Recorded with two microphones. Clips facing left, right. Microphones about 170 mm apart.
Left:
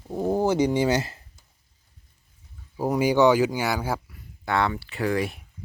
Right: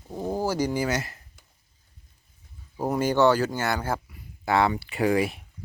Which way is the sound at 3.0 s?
15° left (ahead or behind).